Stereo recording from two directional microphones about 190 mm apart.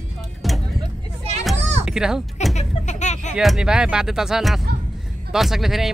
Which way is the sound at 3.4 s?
Centre (ahead or behind).